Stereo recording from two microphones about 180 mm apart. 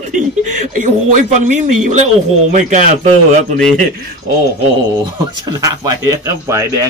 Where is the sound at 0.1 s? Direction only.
45° right (ahead or behind).